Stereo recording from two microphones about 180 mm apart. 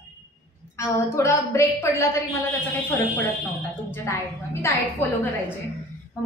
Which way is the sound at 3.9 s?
15° left (ahead or behind).